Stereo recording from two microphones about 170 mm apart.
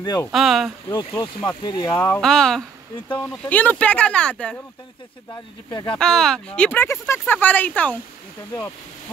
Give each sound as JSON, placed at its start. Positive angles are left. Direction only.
{"t": 0.0, "sound": "speech", "side_deg": 20}
{"t": 0.3, "sound": "speech", "side_deg": 0}
{"t": 0.8, "sound": "speech", "side_deg": 20}
{"t": 2.0, "sound": "speech", "side_deg": 10}
{"t": 5.7, "sound": "speech", "side_deg": 25}
{"t": 5.9, "sound": "speech", "side_deg": 5}